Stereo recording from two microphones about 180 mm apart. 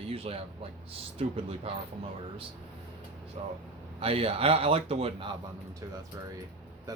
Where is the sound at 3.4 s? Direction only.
35° right (ahead or behind).